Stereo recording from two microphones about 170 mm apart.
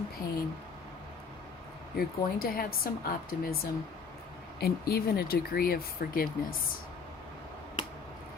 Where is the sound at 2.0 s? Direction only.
60° left (ahead or behind).